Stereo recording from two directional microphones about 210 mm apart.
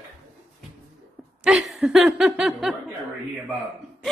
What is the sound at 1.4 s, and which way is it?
Speech, centre (ahead or behind).